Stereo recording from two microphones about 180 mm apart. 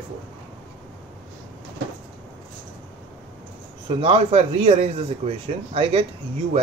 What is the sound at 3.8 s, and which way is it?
Speech, 35° right (ahead or behind).